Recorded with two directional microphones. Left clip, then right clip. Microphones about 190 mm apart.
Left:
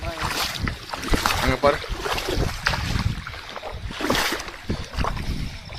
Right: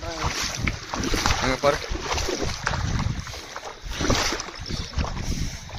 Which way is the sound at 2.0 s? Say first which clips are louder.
Left 2 dB; 50° left (ahead or behind).